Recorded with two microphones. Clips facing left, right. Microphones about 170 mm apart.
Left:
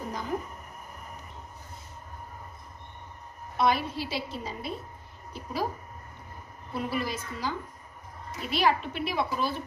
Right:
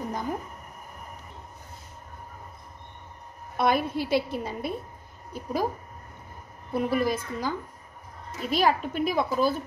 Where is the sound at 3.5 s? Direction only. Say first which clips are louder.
Right 2 dB; 50° right (ahead or behind).